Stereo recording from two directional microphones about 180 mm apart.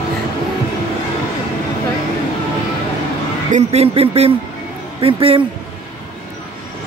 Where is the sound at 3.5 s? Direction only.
35° right (ahead or behind).